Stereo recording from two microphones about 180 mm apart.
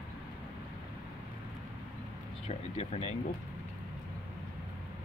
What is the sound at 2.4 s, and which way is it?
Speech, 35° left (ahead or behind).